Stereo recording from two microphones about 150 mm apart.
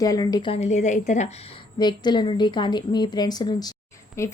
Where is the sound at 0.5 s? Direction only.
45° left (ahead or behind).